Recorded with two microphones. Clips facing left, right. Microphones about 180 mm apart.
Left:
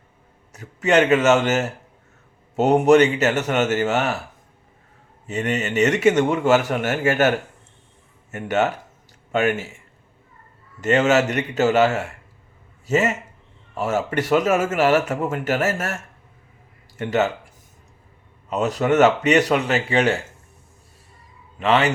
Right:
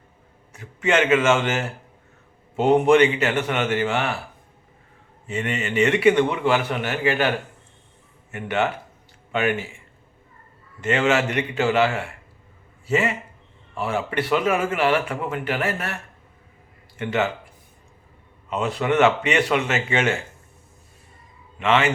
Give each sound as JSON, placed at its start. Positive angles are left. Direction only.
{"t": 0.5, "sound": "a man's voice", "side_deg": 40}
{"t": 5.2, "sound": "a man's voice", "side_deg": 40}
{"t": 10.8, "sound": "a man's voice", "side_deg": 40}
{"t": 17.0, "sound": "speech", "side_deg": 40}
{"t": 18.4, "sound": "speech", "side_deg": 40}
{"t": 21.6, "sound": "speech", "side_deg": 40}